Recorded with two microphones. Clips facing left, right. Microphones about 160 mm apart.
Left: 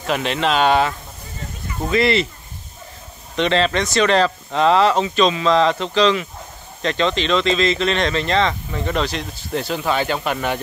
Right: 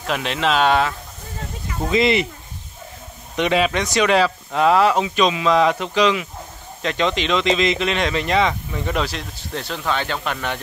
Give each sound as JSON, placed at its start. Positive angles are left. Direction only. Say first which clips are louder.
{"t": 0.0, "sound": "speech", "louder": "left 2 dB", "side_deg": 0}
{"t": 1.9, "sound": "speech", "louder": "even", "side_deg": -20}
{"t": 3.3, "sound": "speech", "louder": "left 1 dB", "side_deg": -10}
{"t": 9.5, "sound": "speech", "louder": "left 3 dB", "side_deg": 5}